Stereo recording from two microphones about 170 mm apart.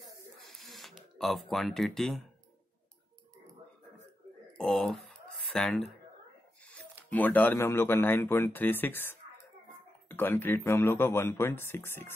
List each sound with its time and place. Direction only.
0.5 s a sound: centre (ahead or behind)
4.6 s speech: centre (ahead or behind)
7.1 s speech: 10° left (ahead or behind)